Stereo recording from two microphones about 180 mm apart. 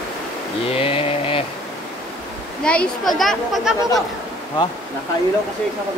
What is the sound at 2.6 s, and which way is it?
Speech, 5° left (ahead or behind).